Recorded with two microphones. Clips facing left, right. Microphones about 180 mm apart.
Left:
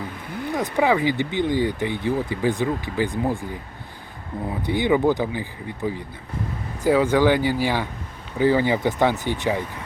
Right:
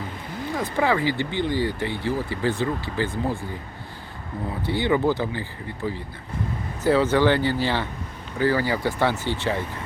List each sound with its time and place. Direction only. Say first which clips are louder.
0.5 s speech: left 3 dB; 15° left (ahead or behind)
4.6 s speech: left 2 dB; 15° left (ahead or behind)